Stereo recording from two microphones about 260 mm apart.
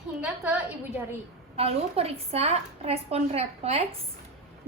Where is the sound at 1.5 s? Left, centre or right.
Right.